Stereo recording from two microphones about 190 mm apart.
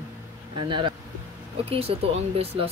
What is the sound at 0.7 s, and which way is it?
Speech, 25° right (ahead or behind).